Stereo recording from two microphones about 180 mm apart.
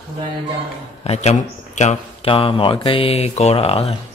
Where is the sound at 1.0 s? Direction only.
35° left (ahead or behind).